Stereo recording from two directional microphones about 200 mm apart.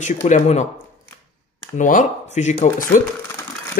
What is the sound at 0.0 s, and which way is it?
Speech, 40° left (ahead or behind).